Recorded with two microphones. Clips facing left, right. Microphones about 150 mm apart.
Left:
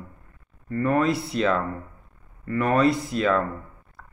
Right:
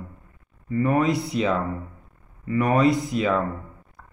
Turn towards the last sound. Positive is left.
turn(degrees=-15)  # may be behind; listen again after turning